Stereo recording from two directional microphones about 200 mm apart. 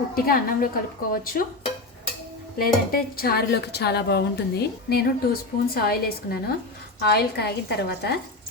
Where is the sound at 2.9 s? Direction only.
50° left (ahead or behind).